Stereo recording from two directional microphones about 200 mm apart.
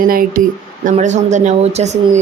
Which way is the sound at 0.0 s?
45° right (ahead or behind).